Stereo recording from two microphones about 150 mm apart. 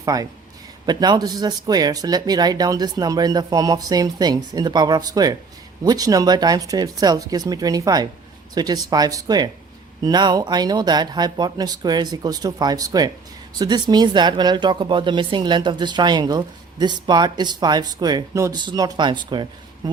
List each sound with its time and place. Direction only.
0.0 s speech: 20° right (ahead or behind)